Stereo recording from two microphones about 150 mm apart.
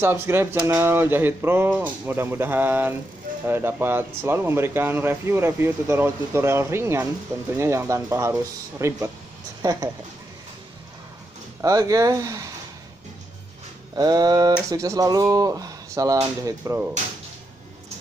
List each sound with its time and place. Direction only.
0.0 s speech: 15° right (ahead or behind)
11.6 s speech: 20° right (ahead or behind)
13.9 s speech: 25° right (ahead or behind)